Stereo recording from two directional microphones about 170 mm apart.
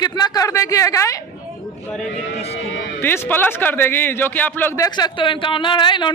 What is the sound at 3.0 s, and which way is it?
A man's voice, 10° left (ahead or behind).